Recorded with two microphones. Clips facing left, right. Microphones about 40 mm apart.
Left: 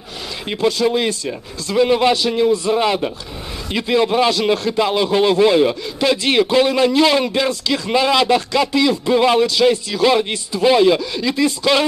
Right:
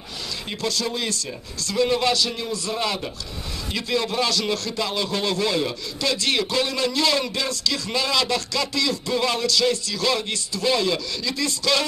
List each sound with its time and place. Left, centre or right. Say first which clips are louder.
0.5 s a man's voice: left 10 dB; left